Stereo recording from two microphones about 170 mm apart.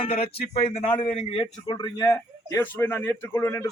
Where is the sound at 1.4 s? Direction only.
25° left (ahead or behind).